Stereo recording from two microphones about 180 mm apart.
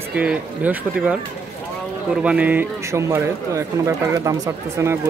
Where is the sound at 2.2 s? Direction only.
5° right (ahead or behind).